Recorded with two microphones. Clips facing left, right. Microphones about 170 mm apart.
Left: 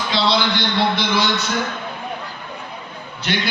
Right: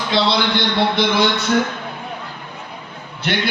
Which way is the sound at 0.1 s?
55° right (ahead or behind).